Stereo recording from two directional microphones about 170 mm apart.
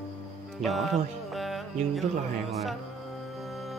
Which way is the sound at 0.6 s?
Centre (ahead or behind).